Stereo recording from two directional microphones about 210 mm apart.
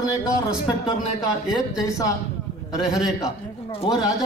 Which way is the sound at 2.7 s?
15° left (ahead or behind).